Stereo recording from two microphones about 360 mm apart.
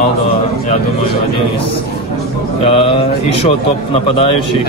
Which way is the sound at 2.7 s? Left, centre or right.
Centre.